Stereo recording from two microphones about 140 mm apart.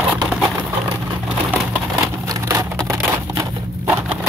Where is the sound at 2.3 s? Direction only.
20° right (ahead or behind).